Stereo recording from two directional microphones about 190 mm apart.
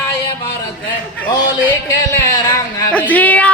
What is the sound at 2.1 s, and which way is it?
Speech, 20° left (ahead or behind).